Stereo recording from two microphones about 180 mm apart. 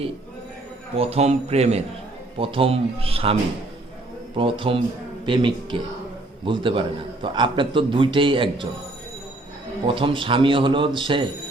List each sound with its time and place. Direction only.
0.9 s speech: 35° right (ahead or behind)
4.4 s a man's voice: 30° right (ahead or behind)
9.8 s a man's voice: 30° right (ahead or behind)